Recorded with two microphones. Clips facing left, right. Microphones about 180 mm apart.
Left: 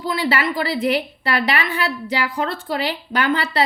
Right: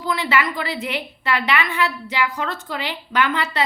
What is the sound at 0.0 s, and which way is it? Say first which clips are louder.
A woman's voice: left 1 dB; 30° left (ahead or behind).